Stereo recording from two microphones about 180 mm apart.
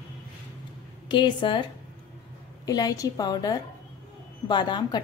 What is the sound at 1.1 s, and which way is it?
Speech, 25° left (ahead or behind).